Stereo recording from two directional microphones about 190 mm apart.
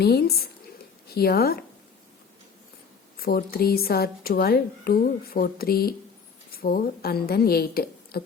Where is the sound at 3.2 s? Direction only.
55° left (ahead or behind).